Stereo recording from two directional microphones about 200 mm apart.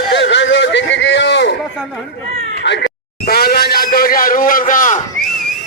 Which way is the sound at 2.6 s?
60° left (ahead or behind).